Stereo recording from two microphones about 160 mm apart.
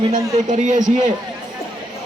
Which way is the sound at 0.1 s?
50° right (ahead or behind).